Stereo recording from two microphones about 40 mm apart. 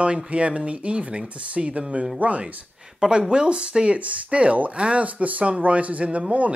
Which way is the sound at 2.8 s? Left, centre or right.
Right.